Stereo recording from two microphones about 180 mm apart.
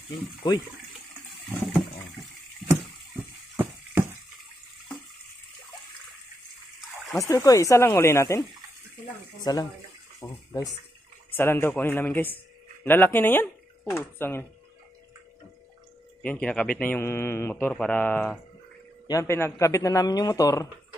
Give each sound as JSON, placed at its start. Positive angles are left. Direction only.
{"t": 0.4, "sound": "a man's voice", "side_deg": 25}
{"t": 3.5, "sound": "a sound", "side_deg": -10}
{"t": 7.2, "sound": "speech", "side_deg": 15}
{"t": 10.2, "sound": "bathtub", "side_deg": 20}
{"t": 11.3, "sound": "speech", "side_deg": 15}
{"t": 16.2, "sound": "a man's voice", "side_deg": 10}